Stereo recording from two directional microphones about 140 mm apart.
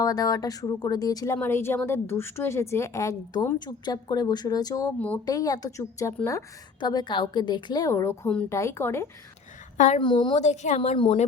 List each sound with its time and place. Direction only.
0.0 s speech: 25° left (ahead or behind)
4.9 s speech: 10° left (ahead or behind)
5.2 s a woman's voice: 25° left (ahead or behind)
9.7 s a woman's voice: 60° left (ahead or behind)
10.0 s a woman's voice: 35° left (ahead or behind)
10.3 s a woman's voice: 55° left (ahead or behind)
10.9 s a woman's voice: 40° left (ahead or behind)